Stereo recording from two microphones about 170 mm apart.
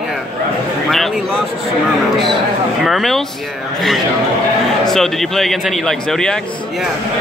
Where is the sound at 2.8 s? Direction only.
Centre (ahead or behind).